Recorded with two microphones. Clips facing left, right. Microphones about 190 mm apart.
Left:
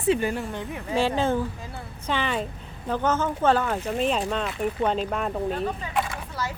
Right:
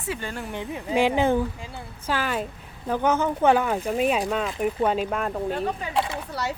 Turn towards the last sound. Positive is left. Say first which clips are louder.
# right 2 dB
turn(degrees=-70)  # may be behind; listen again after turning